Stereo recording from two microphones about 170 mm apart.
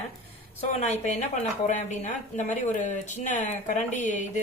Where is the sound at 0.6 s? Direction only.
40° left (ahead or behind).